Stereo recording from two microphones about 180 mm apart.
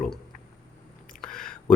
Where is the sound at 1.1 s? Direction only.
5° left (ahead or behind).